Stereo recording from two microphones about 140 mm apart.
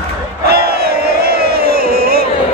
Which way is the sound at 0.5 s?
90° right.